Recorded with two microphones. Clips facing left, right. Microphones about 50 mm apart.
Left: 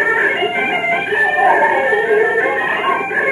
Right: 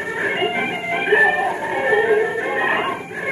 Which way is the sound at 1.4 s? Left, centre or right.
Left.